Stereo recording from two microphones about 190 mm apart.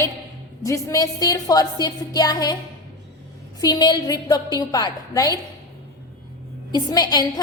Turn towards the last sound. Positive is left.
turn(degrees=20)  # may be behind; listen again after turning